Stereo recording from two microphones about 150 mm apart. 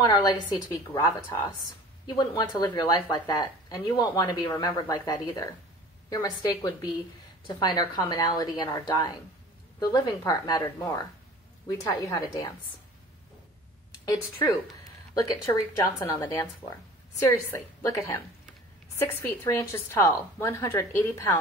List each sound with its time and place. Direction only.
0.0 s speech: 25° left (ahead or behind)
7.4 s speech: 30° left (ahead or behind)
15.1 s a woman's voice: 20° left (ahead or behind)